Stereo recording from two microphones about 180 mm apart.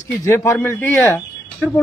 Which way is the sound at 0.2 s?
15° left (ahead or behind).